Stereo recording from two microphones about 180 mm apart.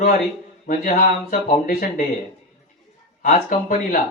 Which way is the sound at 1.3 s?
45° left (ahead or behind).